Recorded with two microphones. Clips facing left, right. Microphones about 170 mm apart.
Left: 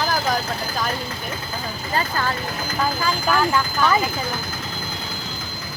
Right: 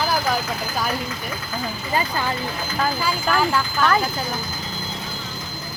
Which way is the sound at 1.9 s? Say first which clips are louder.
Even; 15° right (ahead or behind).